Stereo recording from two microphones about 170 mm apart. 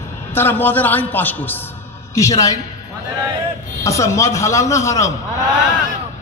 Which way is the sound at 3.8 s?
20° left (ahead or behind).